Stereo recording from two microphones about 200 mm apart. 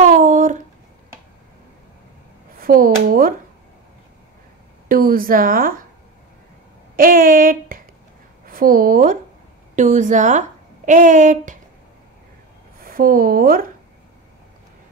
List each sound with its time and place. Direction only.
0.0 s a sound: 40° right (ahead or behind)
2.6 s a woman's voice: 45° right (ahead or behind)
4.8 s a woman's voice: 45° right (ahead or behind)
7.0 s a woman's voice: 45° right (ahead or behind)
12.8 s speech: 45° right (ahead or behind)